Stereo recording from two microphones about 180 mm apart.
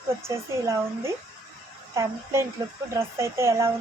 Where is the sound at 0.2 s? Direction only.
15° right (ahead or behind).